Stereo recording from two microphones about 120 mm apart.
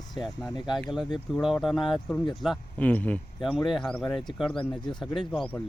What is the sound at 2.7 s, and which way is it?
Speech, 10° left (ahead or behind).